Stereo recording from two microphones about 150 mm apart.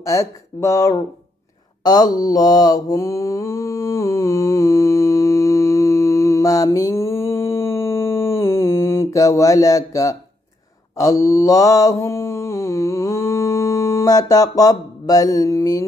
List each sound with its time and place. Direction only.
0.0 s speech: 20° left (ahead or behind)
1.8 s mantra: 25° left (ahead or behind)